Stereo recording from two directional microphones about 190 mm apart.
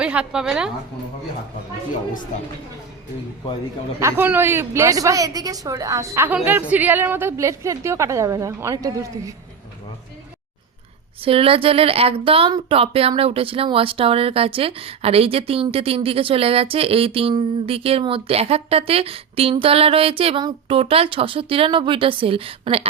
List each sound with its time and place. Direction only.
0.0 s a woman's voice: 5° right (ahead or behind)
4.0 s a woman's voice: 10° right (ahead or behind)
11.2 s speech: 30° right (ahead or behind)